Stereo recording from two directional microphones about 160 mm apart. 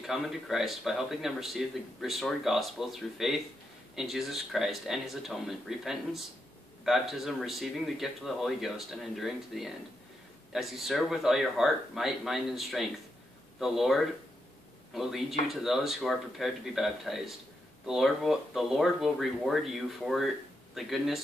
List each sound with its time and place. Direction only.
0.0 s speech: centre (ahead or behind)